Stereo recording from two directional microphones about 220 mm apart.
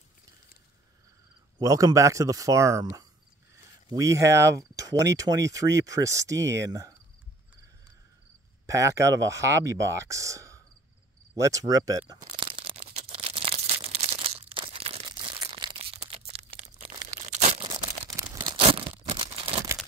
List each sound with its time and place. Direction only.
1.6 s speech: 15° right (ahead or behind)
8.6 s speech: 15° right (ahead or behind)
12.3 s a sound: 25° right (ahead or behind)
18.1 s tearing: 15° right (ahead or behind)